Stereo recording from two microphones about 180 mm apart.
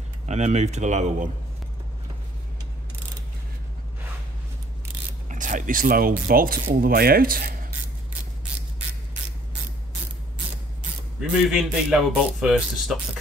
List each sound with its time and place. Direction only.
0.3 s speech: 40° right (ahead or behind)
5.3 s speech: 45° right (ahead or behind)
11.1 s a man's voice: centre (ahead or behind)